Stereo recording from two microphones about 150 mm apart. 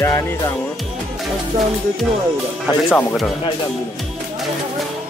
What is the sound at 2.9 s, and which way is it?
Speech, 5° left (ahead or behind).